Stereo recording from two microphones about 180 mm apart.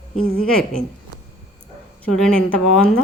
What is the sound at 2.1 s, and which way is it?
Speech, 5° left (ahead or behind).